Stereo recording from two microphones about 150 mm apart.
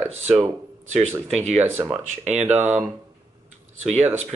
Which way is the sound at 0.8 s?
45° right (ahead or behind).